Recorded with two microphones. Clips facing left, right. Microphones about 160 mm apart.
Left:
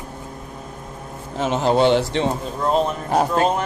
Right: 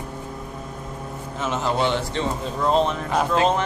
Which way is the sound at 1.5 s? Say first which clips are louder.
Left 6 dB; 30° left (ahead or behind).